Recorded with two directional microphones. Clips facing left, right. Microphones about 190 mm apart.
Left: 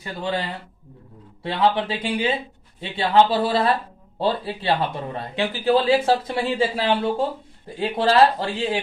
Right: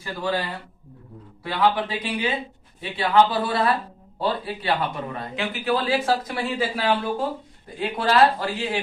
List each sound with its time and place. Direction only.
0.0 s speech: 20° left (ahead or behind)